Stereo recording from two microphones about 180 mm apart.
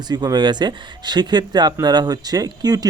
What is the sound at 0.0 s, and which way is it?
Speech, 25° right (ahead or behind).